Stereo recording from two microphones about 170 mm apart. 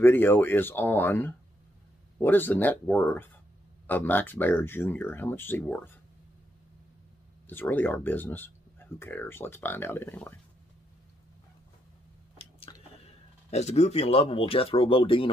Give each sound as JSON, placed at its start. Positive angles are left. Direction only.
{"t": 0.0, "sound": "speech", "side_deg": 10}
{"t": 7.4, "sound": "speech", "side_deg": 10}
{"t": 12.4, "sound": "chewing", "side_deg": 35}